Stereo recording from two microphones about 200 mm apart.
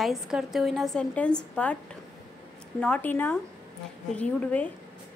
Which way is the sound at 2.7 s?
5° left (ahead or behind).